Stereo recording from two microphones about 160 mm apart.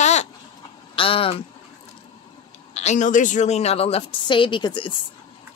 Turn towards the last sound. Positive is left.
turn(degrees=30)  # may be behind; listen again after turning